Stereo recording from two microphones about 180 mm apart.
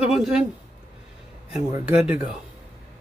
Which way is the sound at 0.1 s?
Centre (ahead or behind).